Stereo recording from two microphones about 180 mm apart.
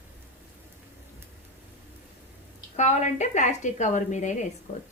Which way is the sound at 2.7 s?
40° left (ahead or behind).